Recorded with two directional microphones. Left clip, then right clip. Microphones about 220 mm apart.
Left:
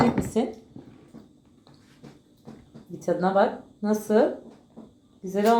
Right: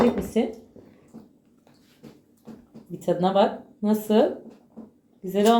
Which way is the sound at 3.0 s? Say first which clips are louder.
Right 1 dB; 10° right (ahead or behind).